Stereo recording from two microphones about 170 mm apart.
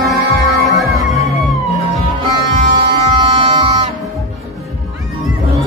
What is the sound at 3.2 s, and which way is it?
Bagpipes, 30° right (ahead or behind).